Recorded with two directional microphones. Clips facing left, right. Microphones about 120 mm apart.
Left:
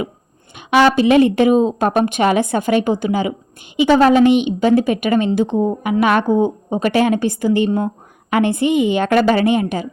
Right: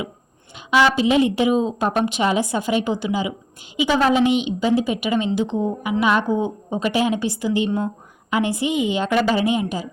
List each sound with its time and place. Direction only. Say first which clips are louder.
0.5 s a woman's voice: left 4 dB; 60° left (ahead or behind)